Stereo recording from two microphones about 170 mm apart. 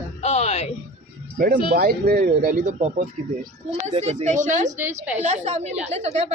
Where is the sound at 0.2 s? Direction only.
40° left (ahead or behind).